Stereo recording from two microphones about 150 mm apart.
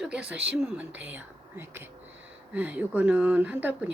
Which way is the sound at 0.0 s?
5° right (ahead or behind).